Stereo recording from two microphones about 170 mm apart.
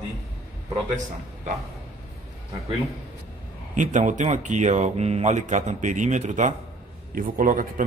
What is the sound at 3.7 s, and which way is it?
Speech, 45° right (ahead or behind).